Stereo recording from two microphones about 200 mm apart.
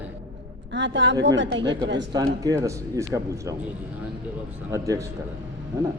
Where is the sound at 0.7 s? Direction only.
65° right (ahead or behind).